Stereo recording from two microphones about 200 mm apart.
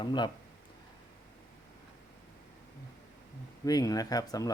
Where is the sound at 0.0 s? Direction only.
25° left (ahead or behind).